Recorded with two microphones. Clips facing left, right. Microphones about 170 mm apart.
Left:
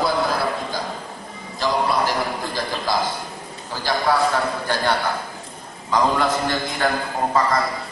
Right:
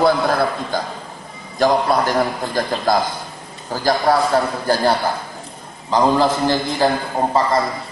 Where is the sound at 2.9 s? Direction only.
50° right (ahead or behind); by 6.9 s 30° right (ahead or behind).